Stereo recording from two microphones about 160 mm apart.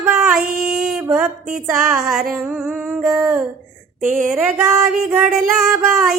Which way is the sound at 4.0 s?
50° right (ahead or behind).